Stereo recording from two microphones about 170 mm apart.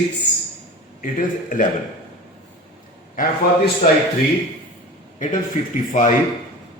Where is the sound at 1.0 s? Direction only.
50° left (ahead or behind).